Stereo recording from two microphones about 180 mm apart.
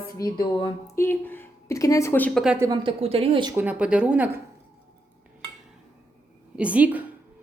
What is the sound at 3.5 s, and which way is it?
Speech, 5° right (ahead or behind).